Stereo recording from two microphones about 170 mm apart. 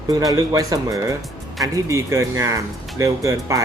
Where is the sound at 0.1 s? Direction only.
20° right (ahead or behind).